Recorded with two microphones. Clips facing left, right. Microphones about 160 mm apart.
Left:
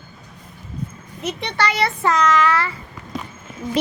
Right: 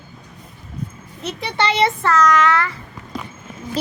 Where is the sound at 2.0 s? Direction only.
10° left (ahead or behind).